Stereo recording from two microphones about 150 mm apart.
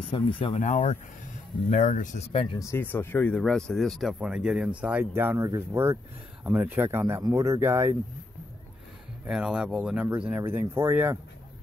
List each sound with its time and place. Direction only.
0.1 s speech: 35° left (ahead or behind)
0.6 s speech: 50° left (ahead or behind)
2.6 s speech: 15° left (ahead or behind); by 7.9 s 15° right (ahead or behind)
9.2 s speech: 5° right (ahead or behind)